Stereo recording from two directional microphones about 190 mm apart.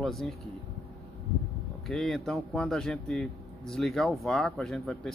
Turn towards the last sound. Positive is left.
turn(degrees=0)  # may be behind; listen again after turning